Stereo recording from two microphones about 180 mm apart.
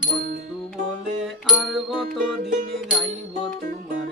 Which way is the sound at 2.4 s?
45° right (ahead or behind).